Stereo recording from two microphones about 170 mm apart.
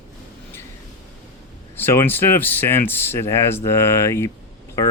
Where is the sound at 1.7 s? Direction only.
15° left (ahead or behind).